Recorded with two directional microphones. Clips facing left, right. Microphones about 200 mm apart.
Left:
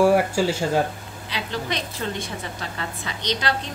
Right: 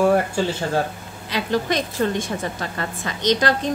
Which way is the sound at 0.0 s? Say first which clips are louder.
Even; 10° left (ahead or behind).